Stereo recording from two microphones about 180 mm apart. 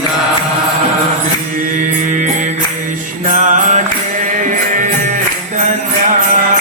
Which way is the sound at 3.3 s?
45° right (ahead or behind).